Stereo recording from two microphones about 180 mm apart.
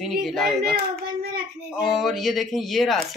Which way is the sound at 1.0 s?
55° right (ahead or behind).